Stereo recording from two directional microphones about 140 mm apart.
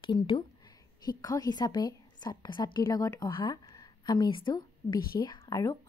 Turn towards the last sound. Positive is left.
turn(degrees=25)  # may be behind; listen again after turning